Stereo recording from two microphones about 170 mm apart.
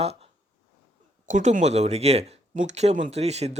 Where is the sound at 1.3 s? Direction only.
45° right (ahead or behind).